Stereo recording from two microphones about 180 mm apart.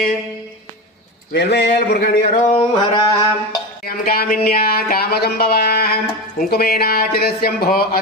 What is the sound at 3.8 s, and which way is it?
Speech, 55° left (ahead or behind).